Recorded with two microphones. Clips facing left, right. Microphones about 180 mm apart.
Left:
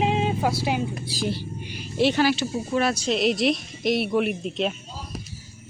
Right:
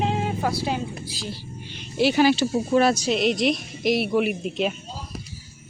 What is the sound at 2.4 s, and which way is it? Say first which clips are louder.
Speech: right 5 dB; 35° right (ahead or behind).